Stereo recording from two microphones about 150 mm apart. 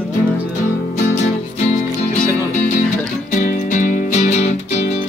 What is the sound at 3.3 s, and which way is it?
Music, 65° left (ahead or behind).